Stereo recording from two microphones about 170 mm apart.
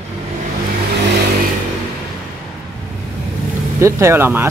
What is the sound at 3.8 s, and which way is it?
Speech, 15° right (ahead or behind).